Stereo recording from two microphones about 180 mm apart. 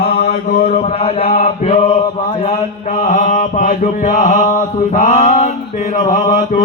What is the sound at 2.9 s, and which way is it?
Mantra, 45° left (ahead or behind).